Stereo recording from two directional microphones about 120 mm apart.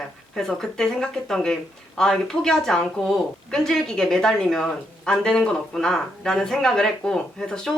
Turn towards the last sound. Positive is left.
turn(degrees=5)  # may be behind; listen again after turning